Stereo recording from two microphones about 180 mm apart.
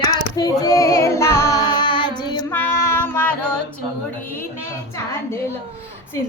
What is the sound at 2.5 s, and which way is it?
Female singing, 10° left (ahead or behind).